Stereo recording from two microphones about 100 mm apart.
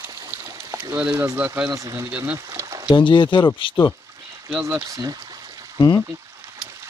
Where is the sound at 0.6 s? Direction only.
35° right (ahead or behind).